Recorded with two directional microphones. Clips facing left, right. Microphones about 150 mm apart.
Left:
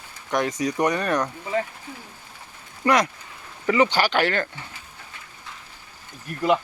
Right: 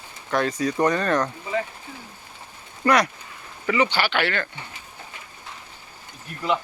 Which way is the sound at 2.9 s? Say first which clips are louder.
Even; 20° left (ahead or behind).